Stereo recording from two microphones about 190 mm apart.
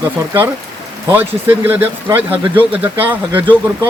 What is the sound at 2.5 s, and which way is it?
Speech, 10° right (ahead or behind).